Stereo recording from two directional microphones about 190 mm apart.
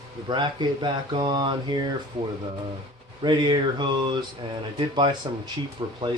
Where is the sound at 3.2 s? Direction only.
25° right (ahead or behind).